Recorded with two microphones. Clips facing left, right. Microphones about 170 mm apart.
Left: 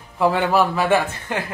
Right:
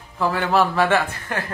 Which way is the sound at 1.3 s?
20° left (ahead or behind).